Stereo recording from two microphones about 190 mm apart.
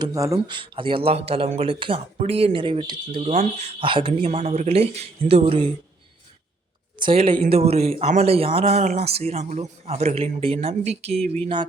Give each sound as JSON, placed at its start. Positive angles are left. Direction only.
{"t": 0.0, "sound": "speech", "side_deg": -15}
{"t": 7.0, "sound": "speech", "side_deg": -30}